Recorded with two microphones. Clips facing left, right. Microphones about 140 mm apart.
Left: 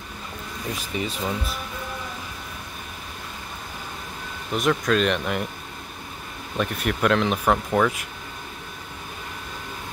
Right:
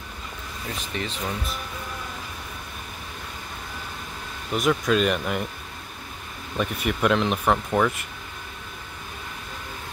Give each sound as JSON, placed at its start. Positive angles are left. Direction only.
{"t": 0.9, "sound": "speech", "side_deg": 10}
{"t": 4.5, "sound": "speech", "side_deg": 0}
{"t": 6.6, "sound": "speech", "side_deg": 0}